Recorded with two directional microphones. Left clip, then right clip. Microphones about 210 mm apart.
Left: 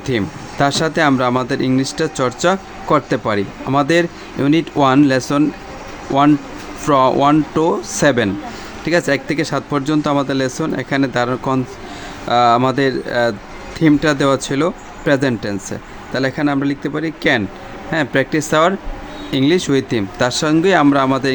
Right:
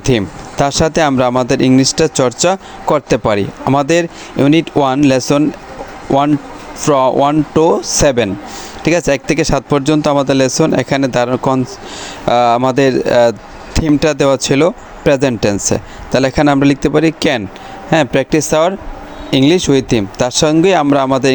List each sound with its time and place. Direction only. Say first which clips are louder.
0.0 s speech: right 5 dB; 30° right (ahead or behind)